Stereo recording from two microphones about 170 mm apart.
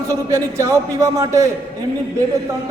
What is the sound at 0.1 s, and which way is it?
A man's voice, 15° right (ahead or behind).